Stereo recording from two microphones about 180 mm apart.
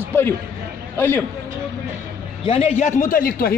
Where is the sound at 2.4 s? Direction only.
35° left (ahead or behind); by 3.5 s 55° left (ahead or behind).